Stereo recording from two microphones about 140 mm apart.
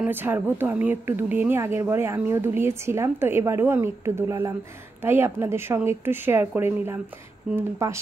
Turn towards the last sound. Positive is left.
turn(degrees=-20)  # may be behind; listen again after turning